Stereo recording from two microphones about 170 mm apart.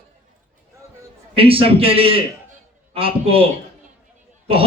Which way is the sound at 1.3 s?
35° right (ahead or behind).